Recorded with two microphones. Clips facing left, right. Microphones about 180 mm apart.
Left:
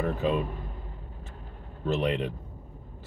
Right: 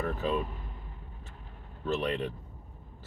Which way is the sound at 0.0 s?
20° left (ahead or behind).